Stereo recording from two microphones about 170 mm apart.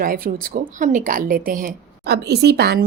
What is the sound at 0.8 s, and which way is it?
A woman's voice, 50° right (ahead or behind).